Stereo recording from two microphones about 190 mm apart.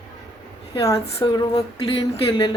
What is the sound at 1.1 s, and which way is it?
Speech, 25° left (ahead or behind).